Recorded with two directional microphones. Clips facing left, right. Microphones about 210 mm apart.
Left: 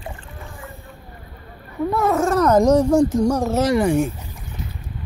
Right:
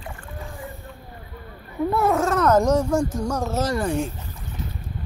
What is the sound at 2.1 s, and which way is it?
Speech, 10° left (ahead or behind).